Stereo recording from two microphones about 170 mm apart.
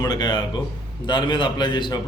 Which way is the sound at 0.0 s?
25° left (ahead or behind).